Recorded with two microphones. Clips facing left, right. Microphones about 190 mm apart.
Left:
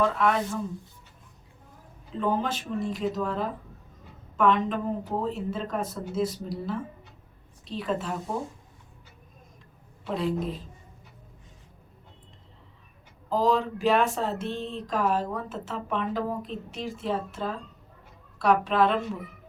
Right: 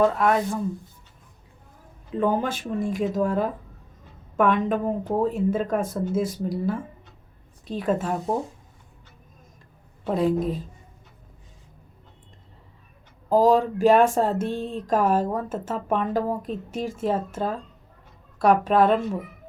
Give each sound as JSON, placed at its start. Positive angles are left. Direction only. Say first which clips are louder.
{"t": 0.0, "sound": "speech", "louder": "right 4 dB", "side_deg": -45}
{"t": 2.1, "sound": "speech", "louder": "right 4 dB", "side_deg": -50}
{"t": 10.2, "sound": "speech", "louder": "right 6 dB", "side_deg": -45}
{"t": 13.3, "sound": "speech", "louder": "right 6 dB", "side_deg": -45}